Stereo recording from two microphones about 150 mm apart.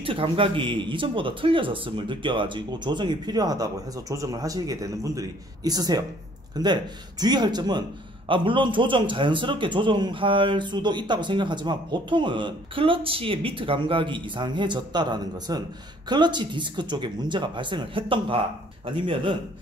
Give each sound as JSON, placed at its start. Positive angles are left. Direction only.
{"t": 0.0, "sound": "a man's voice", "side_deg": -35}